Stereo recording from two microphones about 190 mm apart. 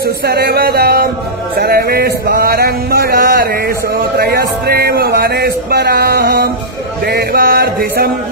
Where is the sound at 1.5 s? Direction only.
55° right (ahead or behind).